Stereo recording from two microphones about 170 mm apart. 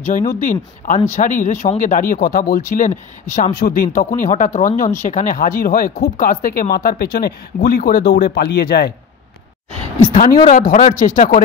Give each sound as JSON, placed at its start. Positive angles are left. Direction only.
{"t": 0.3, "sound": "speech", "side_deg": 50}
{"t": 10.1, "sound": "speech", "side_deg": 50}